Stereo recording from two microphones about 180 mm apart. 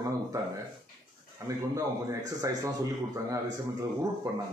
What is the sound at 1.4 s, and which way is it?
A man's voice, 20° right (ahead or behind).